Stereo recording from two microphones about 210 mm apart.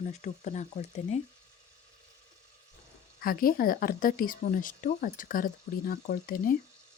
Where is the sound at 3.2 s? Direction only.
45° left (ahead or behind).